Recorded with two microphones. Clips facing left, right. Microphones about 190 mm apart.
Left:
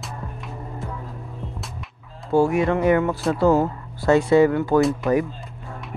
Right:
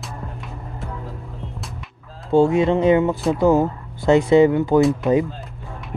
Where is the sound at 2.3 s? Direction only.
25° right (ahead or behind).